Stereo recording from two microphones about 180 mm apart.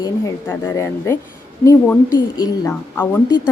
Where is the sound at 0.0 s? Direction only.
15° left (ahead or behind).